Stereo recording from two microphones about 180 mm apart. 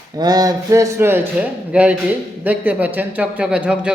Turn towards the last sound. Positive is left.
turn(degrees=-5)  # may be behind; listen again after turning